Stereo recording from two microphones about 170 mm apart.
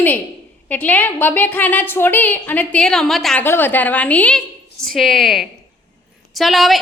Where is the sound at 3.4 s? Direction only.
10° left (ahead or behind).